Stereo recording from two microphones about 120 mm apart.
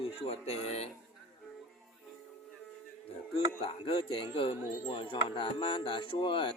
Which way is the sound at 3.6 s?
55° left (ahead or behind).